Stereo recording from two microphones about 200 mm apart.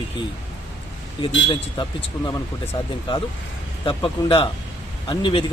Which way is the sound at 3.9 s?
25° left (ahead or behind).